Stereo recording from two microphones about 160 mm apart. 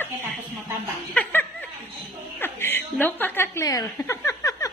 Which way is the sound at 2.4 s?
15° left (ahead or behind).